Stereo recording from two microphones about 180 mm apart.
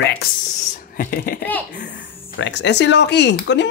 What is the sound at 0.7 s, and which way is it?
Speech, 50° left (ahead or behind).